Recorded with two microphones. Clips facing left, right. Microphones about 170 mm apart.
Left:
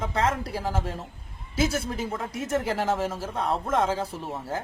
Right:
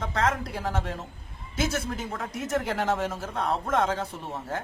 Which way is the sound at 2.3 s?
30° left (ahead or behind).